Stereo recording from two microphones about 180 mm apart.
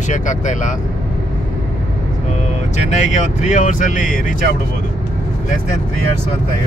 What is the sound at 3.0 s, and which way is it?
Speech, 45° left (ahead or behind).